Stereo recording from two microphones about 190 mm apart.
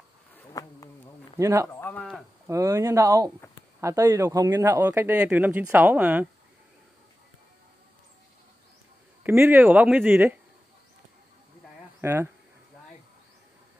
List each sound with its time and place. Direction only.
0.5 s bee: 20° left (ahead or behind)
1.4 s speech: 15° right (ahead or behind)
1.7 s a sound: 10° left (ahead or behind)
2.4 s speech: 15° right (ahead or behind)
9.2 s speech: 10° right (ahead or behind)
12.0 s speech: 10° right (ahead or behind)